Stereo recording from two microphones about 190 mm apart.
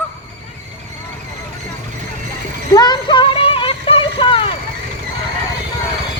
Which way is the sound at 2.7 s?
20° left (ahead or behind).